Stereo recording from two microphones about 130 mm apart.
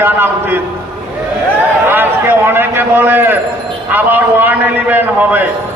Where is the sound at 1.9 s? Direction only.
15° right (ahead or behind).